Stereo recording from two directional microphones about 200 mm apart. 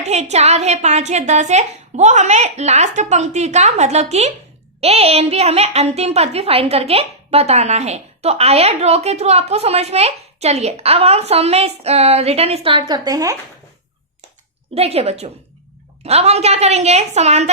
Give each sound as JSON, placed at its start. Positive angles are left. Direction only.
{"t": 0.0, "sound": "a woman's voice", "side_deg": -35}
{"t": 14.8, "sound": "a woman's voice", "side_deg": -30}